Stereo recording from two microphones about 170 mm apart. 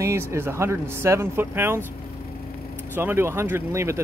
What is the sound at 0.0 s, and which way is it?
Speech, 15° right (ahead or behind).